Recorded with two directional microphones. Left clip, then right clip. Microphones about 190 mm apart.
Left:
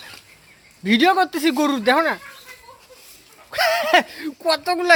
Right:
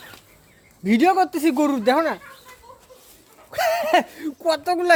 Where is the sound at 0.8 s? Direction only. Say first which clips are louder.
Left 1 dB; centre (ahead or behind).